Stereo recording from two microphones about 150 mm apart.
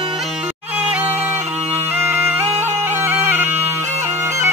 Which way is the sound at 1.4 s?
45° right (ahead or behind).